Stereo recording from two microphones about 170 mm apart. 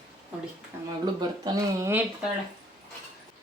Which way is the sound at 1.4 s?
15° right (ahead or behind).